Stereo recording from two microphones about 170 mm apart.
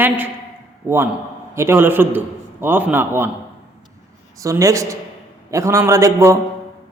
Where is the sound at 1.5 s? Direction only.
15° right (ahead or behind).